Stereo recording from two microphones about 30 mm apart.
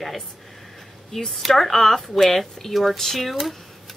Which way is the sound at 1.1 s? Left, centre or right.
Centre.